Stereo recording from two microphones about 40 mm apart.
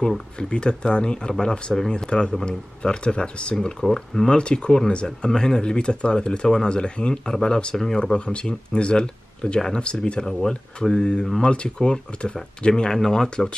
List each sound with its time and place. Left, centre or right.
0.4 s speech: left